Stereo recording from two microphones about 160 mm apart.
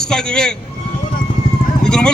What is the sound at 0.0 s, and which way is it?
Speech, 5° left (ahead or behind).